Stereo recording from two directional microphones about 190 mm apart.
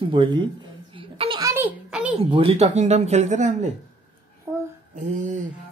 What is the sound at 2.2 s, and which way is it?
Speech, 30° right (ahead or behind).